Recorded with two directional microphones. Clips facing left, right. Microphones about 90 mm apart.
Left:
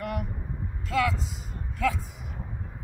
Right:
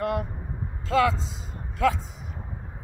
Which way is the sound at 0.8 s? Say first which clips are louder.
Right 4 dB; 35° right (ahead or behind).